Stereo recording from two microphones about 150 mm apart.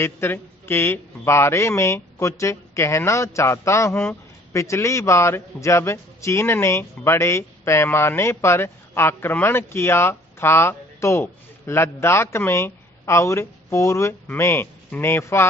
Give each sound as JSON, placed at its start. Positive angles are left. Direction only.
{"t": 0.0, "sound": "a man's voice", "side_deg": 15}